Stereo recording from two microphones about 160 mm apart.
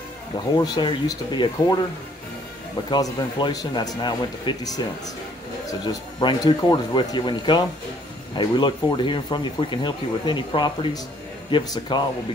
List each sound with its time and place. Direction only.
0.6 s speech: 30° left (ahead or behind)
2.9 s speech: 30° left (ahead or behind)